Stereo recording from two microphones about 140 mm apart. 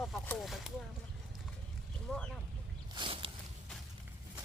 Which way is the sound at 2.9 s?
35° right (ahead or behind).